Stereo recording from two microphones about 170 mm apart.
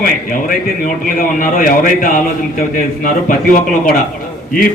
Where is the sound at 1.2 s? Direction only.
55° left (ahead or behind).